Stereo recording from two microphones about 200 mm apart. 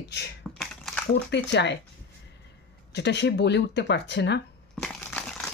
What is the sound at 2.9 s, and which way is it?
Speech, 60° left (ahead or behind).